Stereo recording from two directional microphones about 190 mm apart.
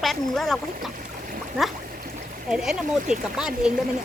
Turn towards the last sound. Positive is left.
turn(degrees=-5)  # may be behind; listen again after turning